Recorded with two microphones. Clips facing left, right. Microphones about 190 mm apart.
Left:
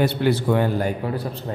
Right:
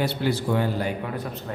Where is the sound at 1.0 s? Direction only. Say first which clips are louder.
Left 4 dB; 30° left (ahead or behind).